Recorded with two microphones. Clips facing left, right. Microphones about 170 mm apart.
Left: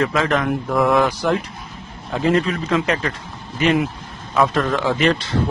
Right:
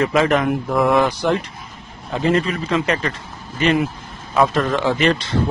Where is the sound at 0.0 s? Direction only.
10° right (ahead or behind).